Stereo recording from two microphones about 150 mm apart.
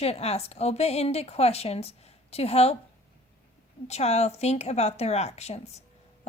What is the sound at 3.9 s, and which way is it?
A woman's voice, 45° left (ahead or behind).